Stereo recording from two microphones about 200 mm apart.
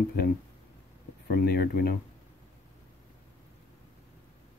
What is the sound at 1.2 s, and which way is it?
Speech, 50° left (ahead or behind).